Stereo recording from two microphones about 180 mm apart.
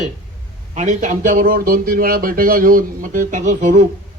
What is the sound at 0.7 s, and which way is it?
A man's voice, 40° right (ahead or behind).